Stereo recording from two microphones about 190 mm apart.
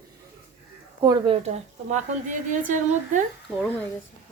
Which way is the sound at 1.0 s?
20° right (ahead or behind).